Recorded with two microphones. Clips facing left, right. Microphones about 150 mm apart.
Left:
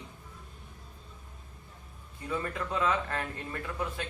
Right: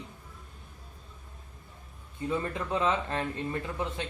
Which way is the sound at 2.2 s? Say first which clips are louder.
Right 3 dB; 20° right (ahead or behind).